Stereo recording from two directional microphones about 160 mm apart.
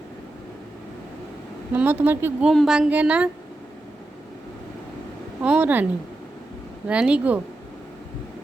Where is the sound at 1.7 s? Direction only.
10° right (ahead or behind).